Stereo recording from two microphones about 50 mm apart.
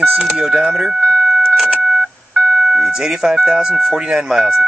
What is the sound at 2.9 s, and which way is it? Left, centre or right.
Speech, centre.